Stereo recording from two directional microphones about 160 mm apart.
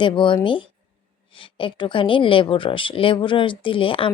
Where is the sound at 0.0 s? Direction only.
30° left (ahead or behind).